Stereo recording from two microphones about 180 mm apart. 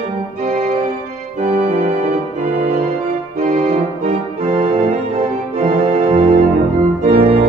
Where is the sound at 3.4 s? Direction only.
40° right (ahead or behind).